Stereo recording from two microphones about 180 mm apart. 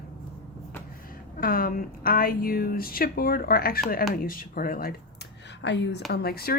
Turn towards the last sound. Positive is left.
turn(degrees=60)  # may be behind; listen again after turning